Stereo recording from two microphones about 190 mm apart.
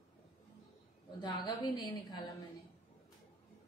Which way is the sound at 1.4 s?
25° left (ahead or behind).